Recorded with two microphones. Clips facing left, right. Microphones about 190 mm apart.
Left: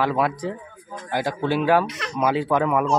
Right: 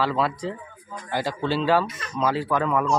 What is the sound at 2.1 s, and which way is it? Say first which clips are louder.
Speech: left 3 dB; 15° left (ahead or behind).